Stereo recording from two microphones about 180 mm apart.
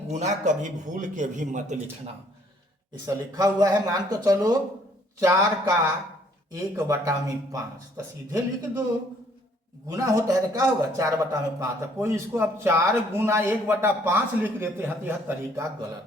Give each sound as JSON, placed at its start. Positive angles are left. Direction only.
{"t": 0.1, "sound": "a man's voice", "side_deg": -40}
{"t": 3.1, "sound": "a man's voice", "side_deg": -20}
{"t": 9.9, "sound": "a man's voice", "side_deg": -15}